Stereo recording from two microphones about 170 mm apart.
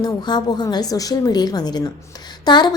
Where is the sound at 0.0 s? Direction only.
25° left (ahead or behind).